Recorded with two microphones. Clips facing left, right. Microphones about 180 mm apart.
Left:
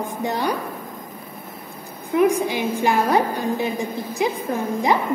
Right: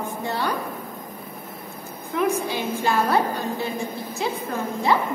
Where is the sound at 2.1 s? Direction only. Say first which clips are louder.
Left 5 dB; 15° left (ahead or behind).